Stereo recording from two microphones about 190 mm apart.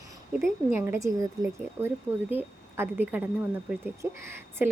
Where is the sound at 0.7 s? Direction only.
10° right (ahead or behind).